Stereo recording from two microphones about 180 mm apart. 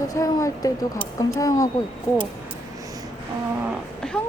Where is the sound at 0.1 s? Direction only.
15° left (ahead or behind).